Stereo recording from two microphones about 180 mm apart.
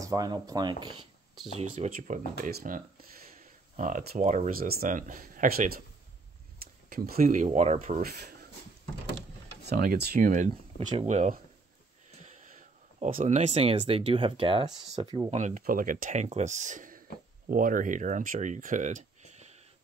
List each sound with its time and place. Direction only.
0.0 s speech: 20° right (ahead or behind)
1.6 s speech: 40° right (ahead or behind)
6.9 s speech: 55° right (ahead or behind); by 8.0 s 40° right (ahead or behind)
8.0 s speech: 65° right (ahead or behind)
9.7 s speech: 60° right (ahead or behind); by 15.1 s 25° right (ahead or behind)
15.3 s speech: 45° right (ahead or behind)